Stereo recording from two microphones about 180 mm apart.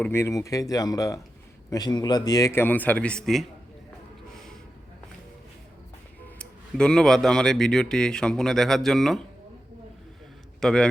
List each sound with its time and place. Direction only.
0.0 s a man's voice: 15° left (ahead or behind)
6.2 s speech: 5° left (ahead or behind)
10.6 s a man's voice: 5° left (ahead or behind)